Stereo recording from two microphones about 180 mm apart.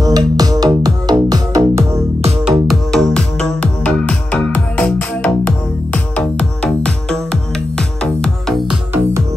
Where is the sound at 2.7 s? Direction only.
5° left (ahead or behind).